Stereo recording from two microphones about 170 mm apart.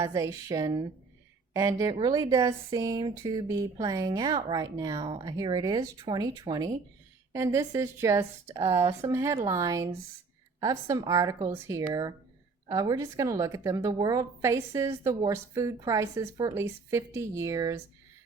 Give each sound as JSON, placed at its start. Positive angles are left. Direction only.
{"t": 0.0, "sound": "speech", "side_deg": -20}